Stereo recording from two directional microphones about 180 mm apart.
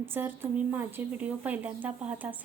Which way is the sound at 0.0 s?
10° right (ahead or behind).